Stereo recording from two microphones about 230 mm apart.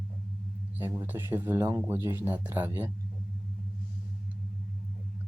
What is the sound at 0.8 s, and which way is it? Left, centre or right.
Speech, centre.